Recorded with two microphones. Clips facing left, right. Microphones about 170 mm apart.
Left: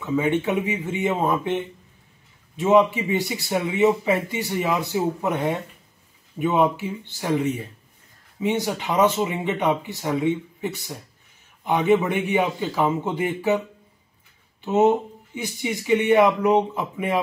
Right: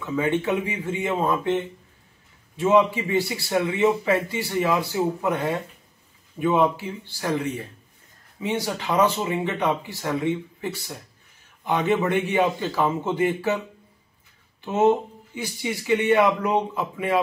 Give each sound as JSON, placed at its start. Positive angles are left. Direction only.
{"t": 0.0, "sound": "a man's voice", "side_deg": 20}
{"t": 14.6, "sound": "speech", "side_deg": 20}